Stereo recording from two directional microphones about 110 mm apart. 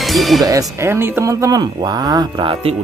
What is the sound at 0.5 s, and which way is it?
Speech, 30° right (ahead or behind).